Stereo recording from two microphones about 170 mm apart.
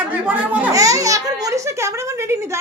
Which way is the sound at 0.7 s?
20° right (ahead or behind).